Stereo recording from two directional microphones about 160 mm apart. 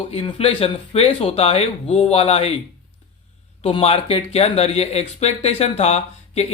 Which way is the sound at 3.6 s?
35° left (ahead or behind).